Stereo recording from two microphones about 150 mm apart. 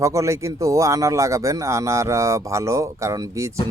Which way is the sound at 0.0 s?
20° right (ahead or behind).